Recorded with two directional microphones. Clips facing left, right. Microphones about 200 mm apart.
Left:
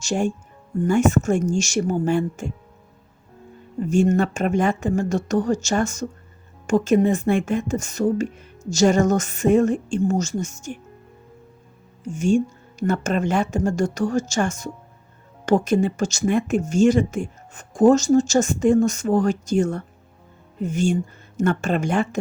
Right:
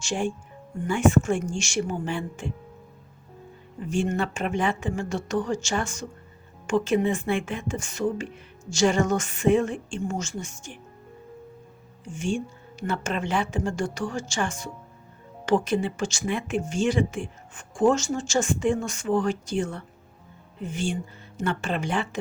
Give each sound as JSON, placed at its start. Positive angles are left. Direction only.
{"t": 0.0, "sound": "speech", "side_deg": 40}
{"t": 3.8, "sound": "speech", "side_deg": 40}
{"t": 12.0, "sound": "speech", "side_deg": 40}